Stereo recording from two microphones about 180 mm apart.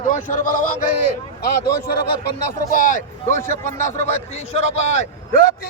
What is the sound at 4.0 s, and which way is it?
A man's voice, 35° left (ahead or behind).